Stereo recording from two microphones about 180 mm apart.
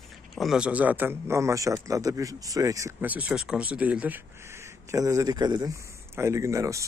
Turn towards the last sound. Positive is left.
turn(degrees=-15)  # may be behind; listen again after turning